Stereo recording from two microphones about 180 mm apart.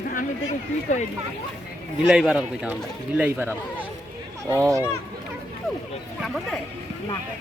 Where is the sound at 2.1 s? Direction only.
5° right (ahead or behind).